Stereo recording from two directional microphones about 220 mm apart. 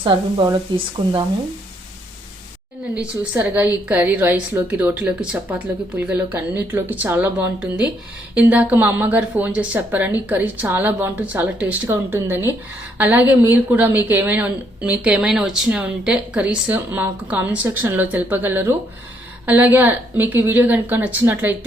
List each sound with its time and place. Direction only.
0.0 s speech: 20° right (ahead or behind)
2.9 s a woman's voice: 5° right (ahead or behind)